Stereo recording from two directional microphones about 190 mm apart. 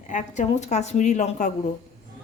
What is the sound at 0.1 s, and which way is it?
A woman's voice, 40° left (ahead or behind).